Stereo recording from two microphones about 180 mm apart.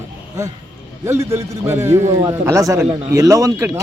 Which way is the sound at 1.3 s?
15° right (ahead or behind).